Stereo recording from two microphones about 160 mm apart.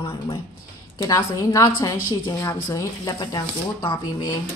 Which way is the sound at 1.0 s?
20° left (ahead or behind).